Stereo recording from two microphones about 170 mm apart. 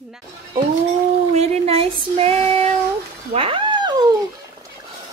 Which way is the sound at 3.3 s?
30° right (ahead or behind).